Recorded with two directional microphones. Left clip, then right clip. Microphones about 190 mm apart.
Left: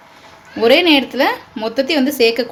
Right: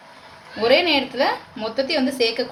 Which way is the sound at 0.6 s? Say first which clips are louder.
Left 6 dB; 55° left (ahead or behind).